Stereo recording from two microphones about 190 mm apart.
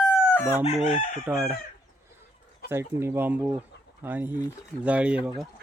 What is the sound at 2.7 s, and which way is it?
Speech, 15° right (ahead or behind).